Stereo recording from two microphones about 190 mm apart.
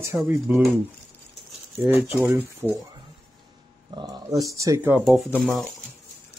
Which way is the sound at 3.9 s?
25° right (ahead or behind).